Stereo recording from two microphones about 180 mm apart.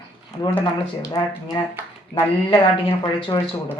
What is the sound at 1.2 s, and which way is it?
Speech, 25° left (ahead or behind).